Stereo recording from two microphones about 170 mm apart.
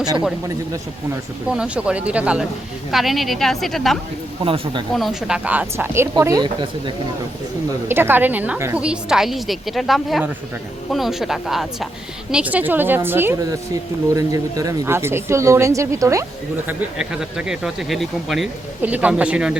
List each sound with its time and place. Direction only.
1.5 s speech: 5° right (ahead or behind)
4.4 s speech: 35° right (ahead or behind)
4.9 s speech: centre (ahead or behind); by 6.9 s 25° right (ahead or behind)
7.9 s speech: 15° right (ahead or behind)